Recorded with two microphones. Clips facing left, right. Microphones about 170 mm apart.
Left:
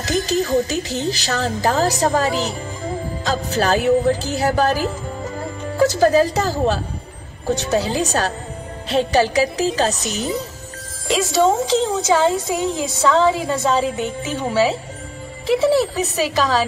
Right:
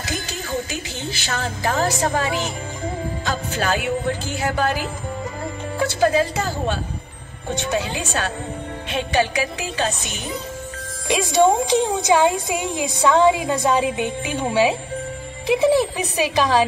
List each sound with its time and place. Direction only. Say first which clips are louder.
0.0 s speech: left 10 dB; 40° left (ahead or behind)
11.1 s speech: even; 15° right (ahead or behind)